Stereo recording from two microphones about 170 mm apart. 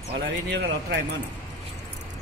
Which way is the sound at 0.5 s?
85° right.